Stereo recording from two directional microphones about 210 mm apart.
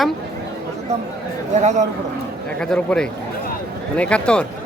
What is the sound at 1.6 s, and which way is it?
Speech, 35° right (ahead or behind).